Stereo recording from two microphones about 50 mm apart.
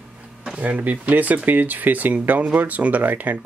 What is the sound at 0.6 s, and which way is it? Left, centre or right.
Speech, right.